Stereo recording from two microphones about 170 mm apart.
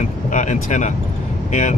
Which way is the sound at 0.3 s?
45° left (ahead or behind).